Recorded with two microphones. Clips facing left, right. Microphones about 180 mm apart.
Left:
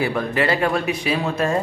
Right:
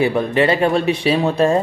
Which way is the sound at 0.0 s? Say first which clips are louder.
Right 5 dB; 25° right (ahead or behind).